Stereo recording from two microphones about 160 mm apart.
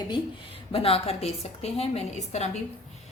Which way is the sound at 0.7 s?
35° left (ahead or behind).